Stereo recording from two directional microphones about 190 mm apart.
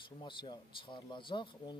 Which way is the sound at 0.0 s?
25° left (ahead or behind).